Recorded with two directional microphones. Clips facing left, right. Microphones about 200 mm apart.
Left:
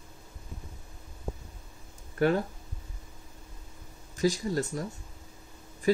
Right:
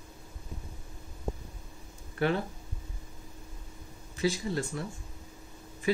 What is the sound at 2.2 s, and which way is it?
Speech, 45° left (ahead or behind).